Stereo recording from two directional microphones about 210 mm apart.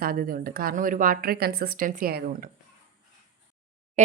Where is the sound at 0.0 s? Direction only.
45° right (ahead or behind).